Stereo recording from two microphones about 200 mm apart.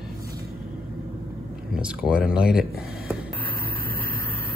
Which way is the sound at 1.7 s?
5° right (ahead or behind).